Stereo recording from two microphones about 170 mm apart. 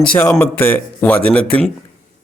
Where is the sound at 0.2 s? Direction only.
15° left (ahead or behind).